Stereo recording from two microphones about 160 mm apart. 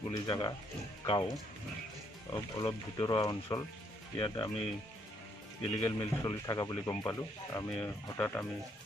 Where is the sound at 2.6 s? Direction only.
30° left (ahead or behind).